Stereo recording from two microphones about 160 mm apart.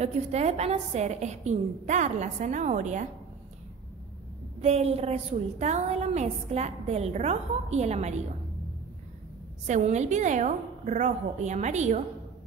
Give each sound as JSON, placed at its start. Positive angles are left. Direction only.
{"t": 0.0, "sound": "a woman's voice", "side_deg": -40}
{"t": 4.6, "sound": "a woman's voice", "side_deg": -40}
{"t": 9.7, "sound": "a woman's voice", "side_deg": -45}